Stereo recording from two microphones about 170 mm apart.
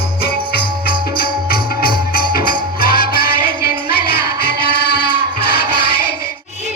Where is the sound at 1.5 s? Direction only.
60° left (ahead or behind).